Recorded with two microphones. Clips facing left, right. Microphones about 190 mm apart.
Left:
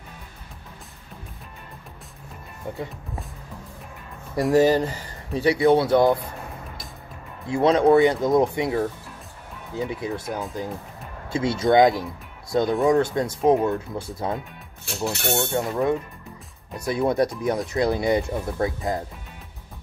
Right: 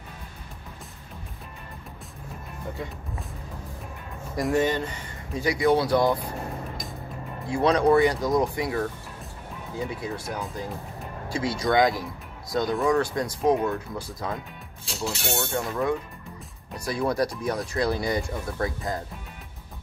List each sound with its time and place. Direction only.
4.4 s speech: 35° left (ahead or behind)
7.5 s speech: 25° left (ahead or behind)
14.9 s speech: 55° left (ahead or behind)
15.5 s speech: 25° left (ahead or behind)